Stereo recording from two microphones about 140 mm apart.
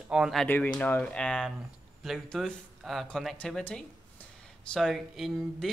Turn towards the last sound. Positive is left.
turn(degrees=0)  # may be behind; listen again after turning